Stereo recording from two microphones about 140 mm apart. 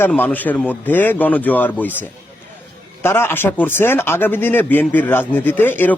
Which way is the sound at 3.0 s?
15° left (ahead or behind).